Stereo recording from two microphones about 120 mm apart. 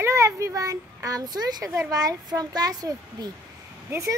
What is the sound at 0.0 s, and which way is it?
A child's voice, 25° right (ahead or behind).